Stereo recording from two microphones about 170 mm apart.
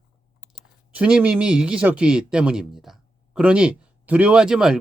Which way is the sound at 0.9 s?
5° right (ahead or behind).